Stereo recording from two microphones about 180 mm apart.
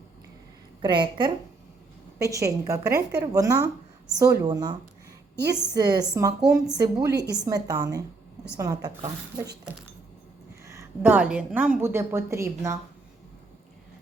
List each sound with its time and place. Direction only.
0.8 s a woman's voice: 25° right (ahead or behind)
10.7 s a woman's voice: 15° right (ahead or behind)